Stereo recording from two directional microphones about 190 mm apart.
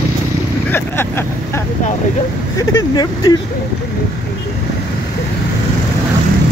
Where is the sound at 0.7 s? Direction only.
10° left (ahead or behind).